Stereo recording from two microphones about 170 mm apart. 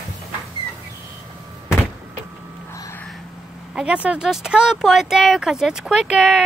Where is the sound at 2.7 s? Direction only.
20° left (ahead or behind).